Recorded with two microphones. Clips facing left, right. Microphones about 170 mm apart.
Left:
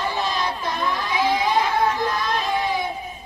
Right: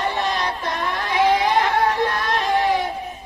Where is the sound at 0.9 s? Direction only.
65° right (ahead or behind).